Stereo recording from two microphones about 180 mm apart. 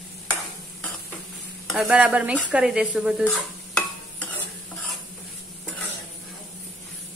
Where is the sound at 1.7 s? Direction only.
5° right (ahead or behind).